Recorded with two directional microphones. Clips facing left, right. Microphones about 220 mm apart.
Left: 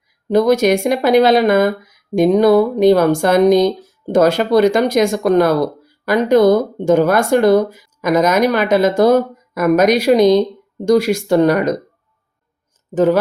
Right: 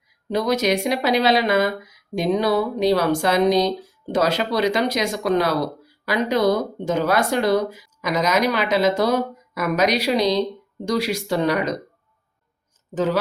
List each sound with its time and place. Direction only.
0.3 s speech: 50° left (ahead or behind)
12.9 s speech: 50° left (ahead or behind)